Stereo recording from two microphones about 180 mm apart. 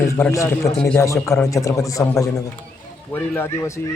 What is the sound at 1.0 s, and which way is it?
Speech, 15° left (ahead or behind).